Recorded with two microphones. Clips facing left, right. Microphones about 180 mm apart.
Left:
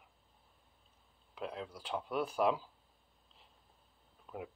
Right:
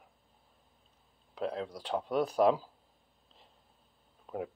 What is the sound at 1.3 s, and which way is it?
Speech, 35° right (ahead or behind).